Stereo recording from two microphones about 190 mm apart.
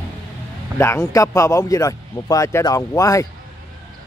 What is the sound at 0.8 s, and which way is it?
Speech, 15° left (ahead or behind).